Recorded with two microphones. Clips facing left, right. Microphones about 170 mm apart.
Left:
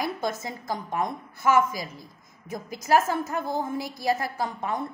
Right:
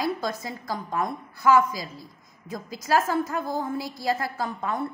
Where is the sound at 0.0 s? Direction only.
20° left (ahead or behind).